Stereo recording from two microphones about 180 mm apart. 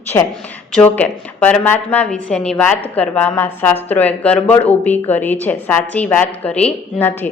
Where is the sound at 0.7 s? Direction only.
5° left (ahead or behind).